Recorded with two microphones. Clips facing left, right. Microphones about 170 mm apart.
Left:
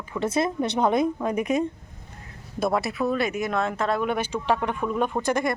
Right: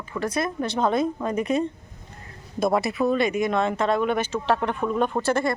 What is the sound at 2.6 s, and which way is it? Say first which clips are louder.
Speech: right 2 dB; centre (ahead or behind).